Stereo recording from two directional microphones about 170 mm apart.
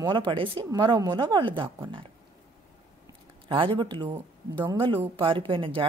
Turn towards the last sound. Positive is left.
turn(degrees=-30)  # may be behind; listen again after turning